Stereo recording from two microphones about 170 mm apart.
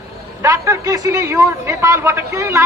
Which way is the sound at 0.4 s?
15° right (ahead or behind).